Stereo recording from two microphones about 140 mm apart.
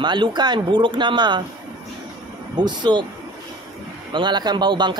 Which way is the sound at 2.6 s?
30° right (ahead or behind).